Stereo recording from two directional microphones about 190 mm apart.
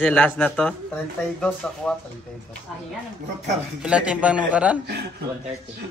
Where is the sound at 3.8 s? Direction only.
5° right (ahead or behind).